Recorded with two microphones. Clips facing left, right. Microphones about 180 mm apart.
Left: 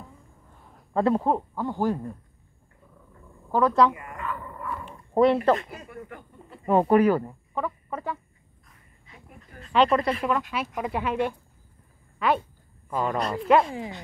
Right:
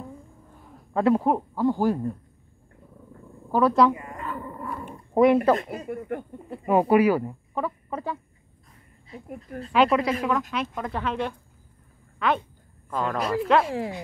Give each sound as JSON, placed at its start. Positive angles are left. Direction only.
{"t": 0.9, "sound": "speech", "side_deg": -5}
{"t": 3.5, "sound": "speech", "side_deg": -10}
{"t": 3.9, "sound": "dog", "side_deg": -30}
{"t": 5.1, "sound": "speech", "side_deg": -15}
{"t": 5.7, "sound": "speech", "side_deg": -55}
{"t": 6.6, "sound": "speech", "side_deg": -10}
{"t": 8.6, "sound": "a sound", "side_deg": -35}
{"t": 9.7, "sound": "speech", "side_deg": -5}
{"t": 10.5, "sound": "speech", "side_deg": 10}
{"t": 13.2, "sound": "speech", "side_deg": -5}